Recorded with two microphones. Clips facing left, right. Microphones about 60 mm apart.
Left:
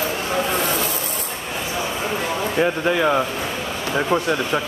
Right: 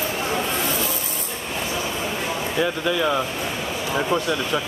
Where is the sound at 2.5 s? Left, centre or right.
Left.